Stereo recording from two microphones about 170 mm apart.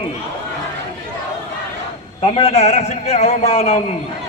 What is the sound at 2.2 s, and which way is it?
A man's voice, 35° left (ahead or behind).